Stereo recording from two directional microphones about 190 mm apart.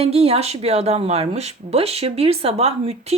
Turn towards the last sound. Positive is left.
turn(degrees=-35)  # may be behind; listen again after turning